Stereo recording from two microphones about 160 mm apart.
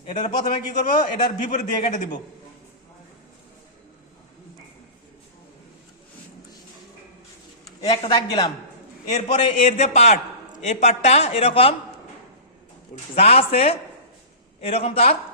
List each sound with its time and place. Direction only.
0.1 s a man's voice: 50° left (ahead or behind)
7.8 s speech: 25° left (ahead or behind)
9.0 s a man's voice: 45° left (ahead or behind)
13.1 s speech: 40° left (ahead or behind)